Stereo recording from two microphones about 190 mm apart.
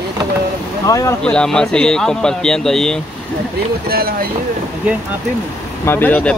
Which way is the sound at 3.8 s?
55° right (ahead or behind).